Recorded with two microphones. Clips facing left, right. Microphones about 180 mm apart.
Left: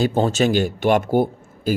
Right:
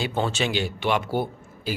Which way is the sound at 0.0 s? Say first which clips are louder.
Left 7 dB; 40° left (ahead or behind).